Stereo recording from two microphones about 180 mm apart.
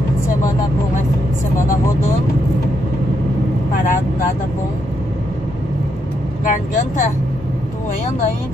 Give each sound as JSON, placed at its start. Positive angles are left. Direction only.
{"t": 3.7, "sound": "speech", "side_deg": 50}
{"t": 6.4, "sound": "speech", "side_deg": 45}